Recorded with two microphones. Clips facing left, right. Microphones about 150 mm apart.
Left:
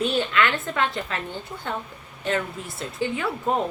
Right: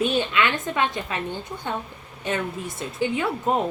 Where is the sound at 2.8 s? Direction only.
20° right (ahead or behind).